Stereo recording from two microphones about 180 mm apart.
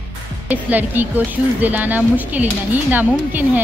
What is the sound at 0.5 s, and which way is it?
Speech, 10° right (ahead or behind).